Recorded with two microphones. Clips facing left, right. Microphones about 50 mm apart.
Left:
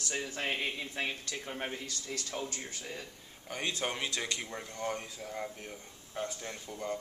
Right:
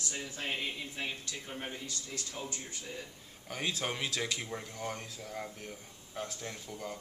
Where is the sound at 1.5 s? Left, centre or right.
Left.